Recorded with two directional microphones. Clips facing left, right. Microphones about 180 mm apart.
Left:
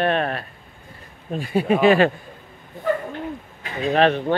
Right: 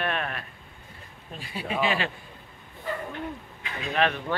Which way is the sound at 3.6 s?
40° left (ahead or behind).